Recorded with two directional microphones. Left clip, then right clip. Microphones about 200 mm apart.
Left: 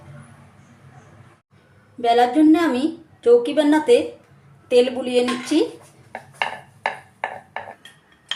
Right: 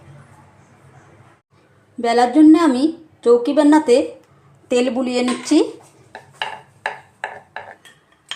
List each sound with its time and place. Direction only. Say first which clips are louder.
2.0 s a woman's voice: right 2 dB; 25° right (ahead or behind)